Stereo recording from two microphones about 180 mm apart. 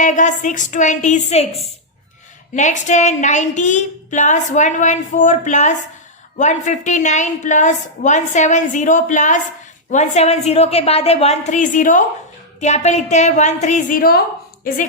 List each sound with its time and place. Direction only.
0.0 s a woman's voice: 45° left (ahead or behind)